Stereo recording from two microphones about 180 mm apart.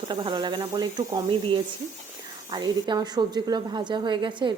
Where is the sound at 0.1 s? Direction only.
25° right (ahead or behind).